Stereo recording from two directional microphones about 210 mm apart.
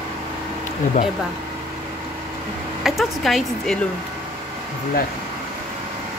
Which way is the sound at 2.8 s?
Centre (ahead or behind).